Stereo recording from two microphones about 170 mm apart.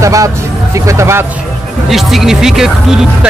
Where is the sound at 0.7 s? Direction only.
15° right (ahead or behind).